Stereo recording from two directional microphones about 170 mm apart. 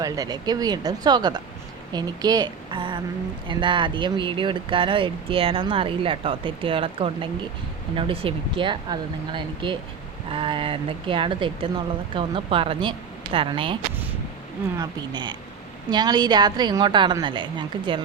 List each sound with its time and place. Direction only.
0.0 s a woman's voice: 20° right (ahead or behind)
14.8 s a woman's voice: 25° right (ahead or behind)